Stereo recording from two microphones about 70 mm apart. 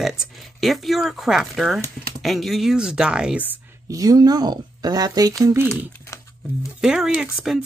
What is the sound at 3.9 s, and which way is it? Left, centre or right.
Speech, right.